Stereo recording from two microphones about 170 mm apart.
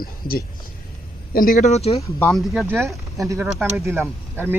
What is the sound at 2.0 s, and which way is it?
Speech, 15° left (ahead or behind).